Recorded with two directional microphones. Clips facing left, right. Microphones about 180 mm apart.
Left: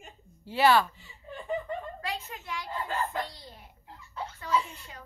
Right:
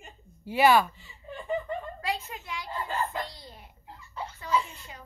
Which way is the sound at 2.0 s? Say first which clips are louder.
Right 3 dB; 10° right (ahead or behind).